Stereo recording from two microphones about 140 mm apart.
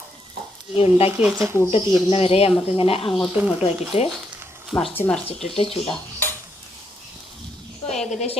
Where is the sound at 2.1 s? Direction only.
45° left (ahead or behind).